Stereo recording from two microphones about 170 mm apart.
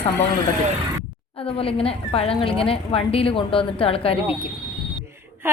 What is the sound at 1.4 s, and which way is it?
Speech, 35° left (ahead or behind).